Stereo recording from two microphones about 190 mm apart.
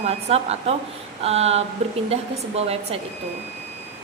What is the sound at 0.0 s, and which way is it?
Speech, 35° right (ahead or behind).